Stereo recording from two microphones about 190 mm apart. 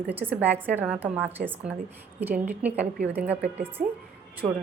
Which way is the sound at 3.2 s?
10° right (ahead or behind).